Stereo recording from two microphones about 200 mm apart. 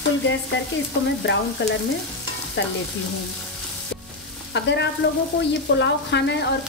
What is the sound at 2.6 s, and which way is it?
Stir, 65° left (ahead or behind).